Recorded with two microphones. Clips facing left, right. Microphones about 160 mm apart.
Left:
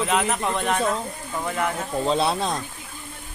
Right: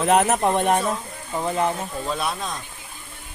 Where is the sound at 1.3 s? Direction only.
25° right (ahead or behind).